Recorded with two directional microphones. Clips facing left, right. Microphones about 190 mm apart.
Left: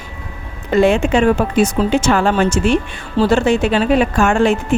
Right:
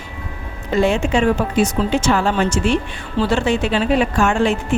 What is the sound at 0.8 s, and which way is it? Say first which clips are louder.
Speech: left 4 dB; 55° left (ahead or behind).